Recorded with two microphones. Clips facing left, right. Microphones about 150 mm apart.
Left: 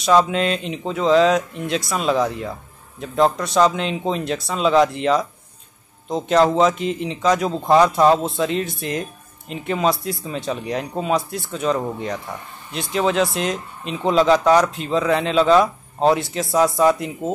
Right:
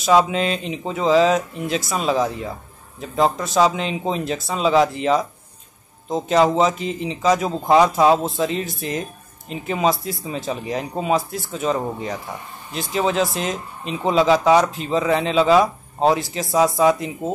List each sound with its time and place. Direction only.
0.0 s speech: centre (ahead or behind)